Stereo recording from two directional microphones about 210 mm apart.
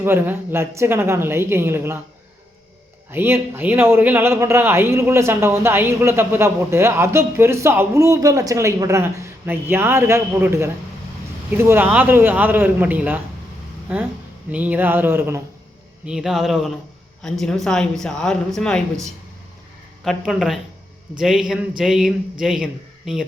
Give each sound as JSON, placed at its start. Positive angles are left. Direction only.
{"t": 0.0, "sound": "a man's voice", "side_deg": -10}
{"t": 3.1, "sound": "a man's voice", "side_deg": -10}
{"t": 14.5, "sound": "a man's voice", "side_deg": -5}
{"t": 20.1, "sound": "speech", "side_deg": 0}